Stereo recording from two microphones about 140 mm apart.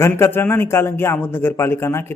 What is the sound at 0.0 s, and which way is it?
Speech, 15° left (ahead or behind).